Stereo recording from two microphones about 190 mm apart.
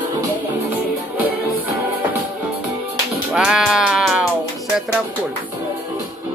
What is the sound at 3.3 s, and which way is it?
Music, 5° right (ahead or behind).